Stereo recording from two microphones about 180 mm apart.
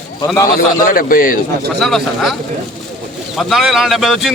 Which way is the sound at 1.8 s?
Centre (ahead or behind).